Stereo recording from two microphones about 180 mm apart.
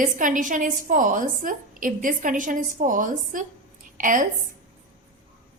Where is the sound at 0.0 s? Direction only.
45° right (ahead or behind).